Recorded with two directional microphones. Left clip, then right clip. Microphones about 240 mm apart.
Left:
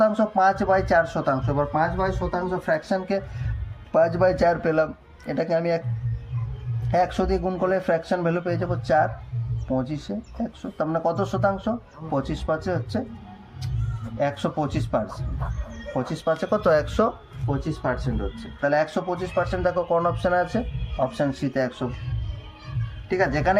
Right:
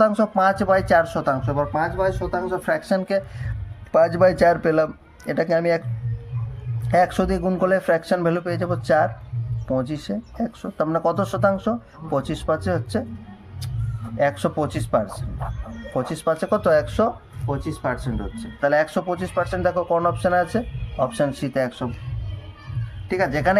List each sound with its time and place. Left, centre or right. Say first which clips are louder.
0.0 s speech: right 2 dB; right
6.9 s speech: right 3 dB; right
14.2 s speech: right 4 dB; right
16.1 s speech: right 2 dB; centre
17.4 s speech: right 1 dB; centre
23.0 s speech: right 1 dB; centre